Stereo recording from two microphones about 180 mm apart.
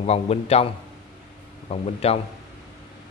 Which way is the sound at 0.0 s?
35° left (ahead or behind).